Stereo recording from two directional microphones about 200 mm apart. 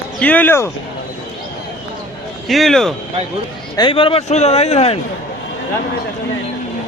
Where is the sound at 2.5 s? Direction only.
Centre (ahead or behind).